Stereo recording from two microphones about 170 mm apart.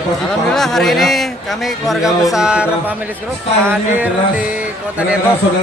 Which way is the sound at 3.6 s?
10° right (ahead or behind).